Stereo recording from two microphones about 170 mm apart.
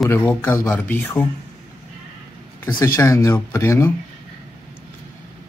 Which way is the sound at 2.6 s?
20° left (ahead or behind).